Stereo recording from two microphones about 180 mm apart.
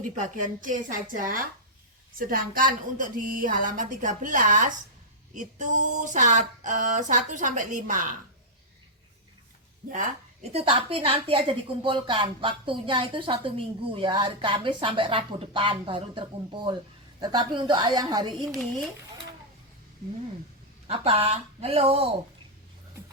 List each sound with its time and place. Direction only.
0.0 s a sound: 45° right (ahead or behind)
10.5 s speech: 30° right (ahead or behind)
18.6 s speech: centre (ahead or behind)
20.8 s speech: 35° right (ahead or behind)